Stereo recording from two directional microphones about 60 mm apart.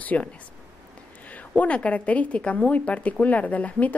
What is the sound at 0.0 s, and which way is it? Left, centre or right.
Speech, left.